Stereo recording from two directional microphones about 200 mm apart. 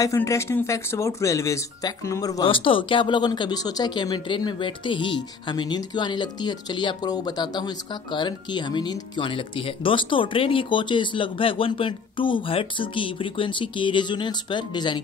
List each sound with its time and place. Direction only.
0.0 s speech: 15° left (ahead or behind)